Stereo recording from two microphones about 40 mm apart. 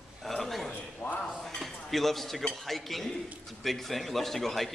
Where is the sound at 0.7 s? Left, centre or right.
Left.